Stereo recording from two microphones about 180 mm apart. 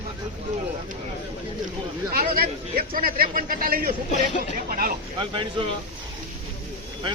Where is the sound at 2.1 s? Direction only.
55° right (ahead or behind).